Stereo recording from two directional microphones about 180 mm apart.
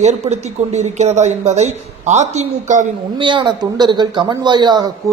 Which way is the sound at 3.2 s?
25° right (ahead or behind).